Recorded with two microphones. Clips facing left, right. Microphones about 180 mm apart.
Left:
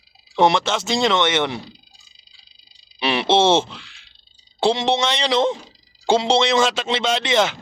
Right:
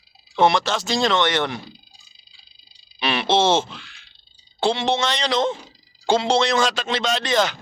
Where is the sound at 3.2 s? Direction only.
25° left (ahead or behind).